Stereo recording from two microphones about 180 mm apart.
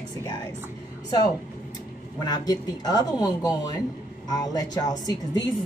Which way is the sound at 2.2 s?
20° left (ahead or behind).